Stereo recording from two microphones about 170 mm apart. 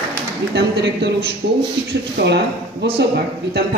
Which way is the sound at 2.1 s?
80° right.